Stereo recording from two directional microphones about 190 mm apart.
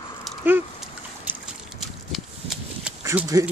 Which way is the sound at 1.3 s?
10° right (ahead or behind).